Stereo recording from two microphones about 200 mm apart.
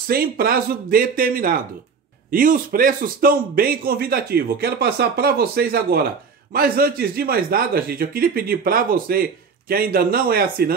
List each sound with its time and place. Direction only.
0.1 s a man's voice: 45° right (ahead or behind)